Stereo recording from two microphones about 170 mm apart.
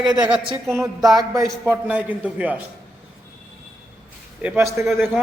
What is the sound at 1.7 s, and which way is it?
Speech, 10° right (ahead or behind).